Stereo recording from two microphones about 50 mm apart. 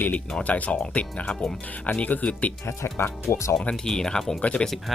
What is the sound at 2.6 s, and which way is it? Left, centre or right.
Speech, left.